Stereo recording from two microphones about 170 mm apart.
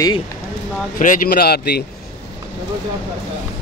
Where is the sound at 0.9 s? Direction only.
50° left (ahead or behind).